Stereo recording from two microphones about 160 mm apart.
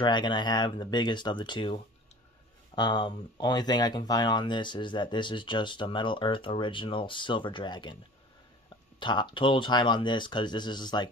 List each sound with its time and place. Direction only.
0.0 s speech: 30° left (ahead or behind)
9.0 s speech: 30° left (ahead or behind)